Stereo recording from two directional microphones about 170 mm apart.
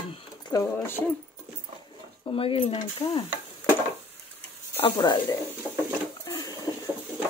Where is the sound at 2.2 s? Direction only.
30° left (ahead or behind).